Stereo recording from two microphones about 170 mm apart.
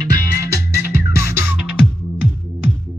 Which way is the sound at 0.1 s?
15° right (ahead or behind).